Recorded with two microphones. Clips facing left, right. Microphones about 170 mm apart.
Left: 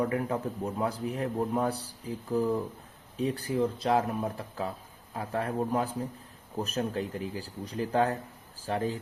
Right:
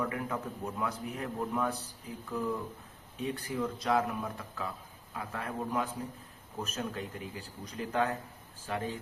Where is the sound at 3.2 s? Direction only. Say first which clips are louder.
Left 6 dB; 35° left (ahead or behind).